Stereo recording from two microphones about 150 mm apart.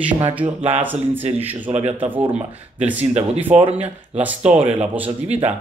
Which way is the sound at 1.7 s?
45° right (ahead or behind).